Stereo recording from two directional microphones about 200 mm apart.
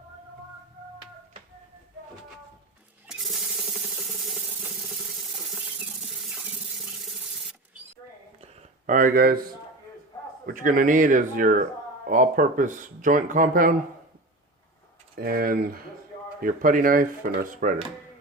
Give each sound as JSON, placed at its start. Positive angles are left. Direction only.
{"t": 3.1, "sound": "a sound", "side_deg": 0}
{"t": 8.9, "sound": "speech", "side_deg": -45}
{"t": 10.4, "sound": "speech", "side_deg": -40}
{"t": 15.2, "sound": "speech", "side_deg": -45}